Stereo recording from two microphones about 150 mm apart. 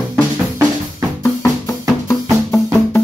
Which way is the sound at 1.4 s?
20° left (ahead or behind).